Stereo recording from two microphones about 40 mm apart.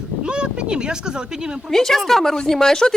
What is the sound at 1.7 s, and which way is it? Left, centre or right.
Speech, centre.